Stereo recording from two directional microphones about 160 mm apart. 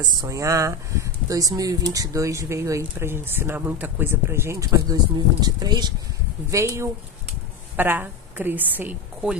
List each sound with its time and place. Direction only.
0.1 s a woman's voice: 25° right (ahead or behind)